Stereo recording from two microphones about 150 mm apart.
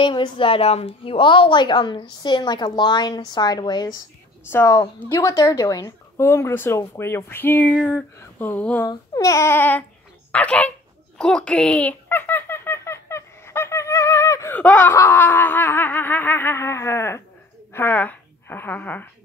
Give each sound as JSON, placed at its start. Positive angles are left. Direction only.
{"t": 0.0, "sound": "a woman's voice", "side_deg": 30}
{"t": 8.8, "sound": "a woman's voice", "side_deg": 20}
{"t": 11.1, "sound": "baby laughter", "side_deg": 5}
{"t": 17.7, "sound": "a woman's voice", "side_deg": 10}